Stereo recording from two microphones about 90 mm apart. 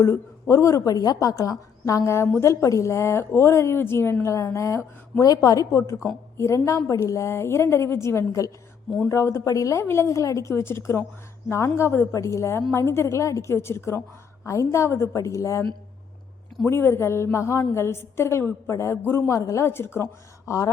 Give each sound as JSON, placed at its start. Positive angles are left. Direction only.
{"t": 0.0, "sound": "a woman's voice", "side_deg": 30}
{"t": 5.2, "sound": "a woman's voice", "side_deg": 40}
{"t": 16.6, "sound": "a woman's voice", "side_deg": 30}